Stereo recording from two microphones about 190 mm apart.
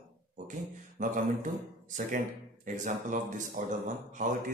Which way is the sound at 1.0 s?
40° right (ahead or behind).